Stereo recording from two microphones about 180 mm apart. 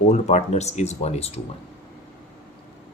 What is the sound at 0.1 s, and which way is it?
Speech, 40° left (ahead or behind).